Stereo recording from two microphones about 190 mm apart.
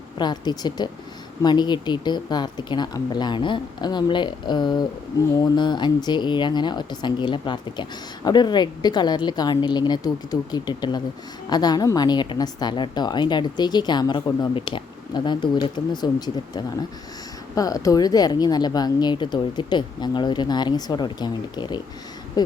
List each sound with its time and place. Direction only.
0.2 s speech: 20° left (ahead or behind)